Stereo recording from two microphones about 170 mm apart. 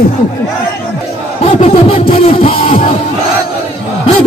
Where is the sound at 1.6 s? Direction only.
35° left (ahead or behind).